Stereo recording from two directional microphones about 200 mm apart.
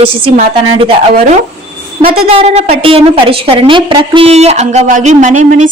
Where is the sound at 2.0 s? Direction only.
50° right (ahead or behind).